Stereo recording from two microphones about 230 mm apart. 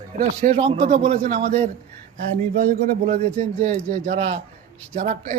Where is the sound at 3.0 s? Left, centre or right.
Right.